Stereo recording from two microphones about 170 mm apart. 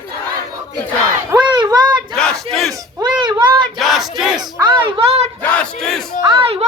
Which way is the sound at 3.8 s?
Centre (ahead or behind).